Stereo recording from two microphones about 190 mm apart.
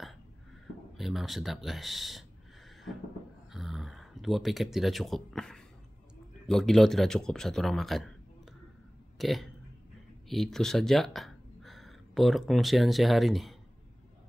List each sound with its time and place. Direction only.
0.9 s speech: centre (ahead or behind)
3.5 s a sound: centre (ahead or behind)
6.4 s speech: centre (ahead or behind)
9.2 s speech: centre (ahead or behind)